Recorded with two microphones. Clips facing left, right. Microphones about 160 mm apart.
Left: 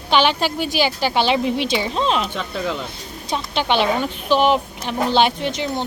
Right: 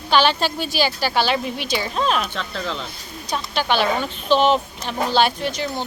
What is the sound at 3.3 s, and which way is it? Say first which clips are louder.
Speech: left 1 dB; 25° left (ahead or behind).